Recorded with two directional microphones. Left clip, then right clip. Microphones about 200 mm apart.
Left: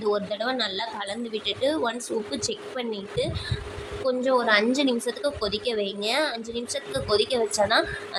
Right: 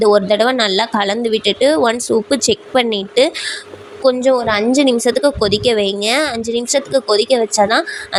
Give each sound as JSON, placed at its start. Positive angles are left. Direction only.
{"t": 0.0, "sound": "a woman's voice", "side_deg": -40}